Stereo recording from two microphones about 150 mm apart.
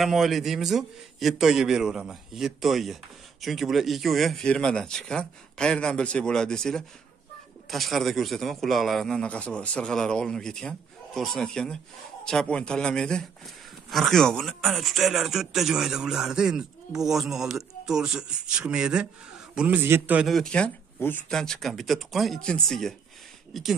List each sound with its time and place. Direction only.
0.0 s a man's voice: centre (ahead or behind)
20.2 s a man's voice: 5° left (ahead or behind)